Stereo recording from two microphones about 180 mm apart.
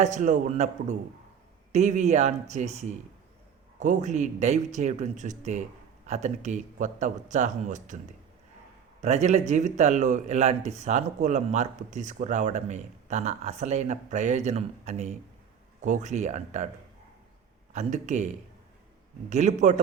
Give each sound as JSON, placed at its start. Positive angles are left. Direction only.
{"t": 0.0, "sound": "a man's voice", "side_deg": -45}
{"t": 9.0, "sound": "speech", "side_deg": -40}
{"t": 17.7, "sound": "speech", "side_deg": -40}
{"t": 19.3, "sound": "speech", "side_deg": -40}